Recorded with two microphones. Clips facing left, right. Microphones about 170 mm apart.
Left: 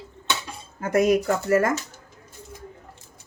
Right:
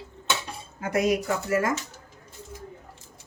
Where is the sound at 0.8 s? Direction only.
55° left (ahead or behind).